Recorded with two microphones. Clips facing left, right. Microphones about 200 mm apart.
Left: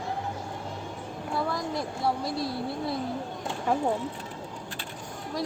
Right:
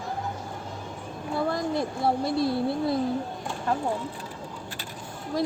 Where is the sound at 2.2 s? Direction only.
25° right (ahead or behind).